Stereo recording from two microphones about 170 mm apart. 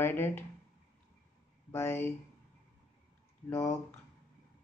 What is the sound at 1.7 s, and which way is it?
Speech, 15° left (ahead or behind).